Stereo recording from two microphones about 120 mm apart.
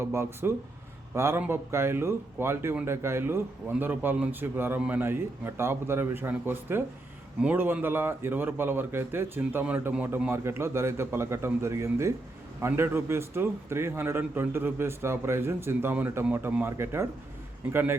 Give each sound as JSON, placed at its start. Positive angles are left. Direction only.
{"t": 0.0, "sound": "a man's voice", "side_deg": -20}